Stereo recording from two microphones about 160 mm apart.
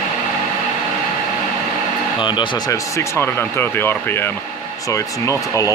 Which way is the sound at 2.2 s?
30° left (ahead or behind).